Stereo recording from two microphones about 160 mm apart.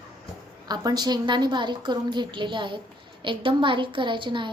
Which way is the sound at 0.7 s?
25° right (ahead or behind).